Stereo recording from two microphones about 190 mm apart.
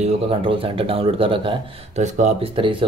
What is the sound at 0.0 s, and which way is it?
Speech, 30° right (ahead or behind).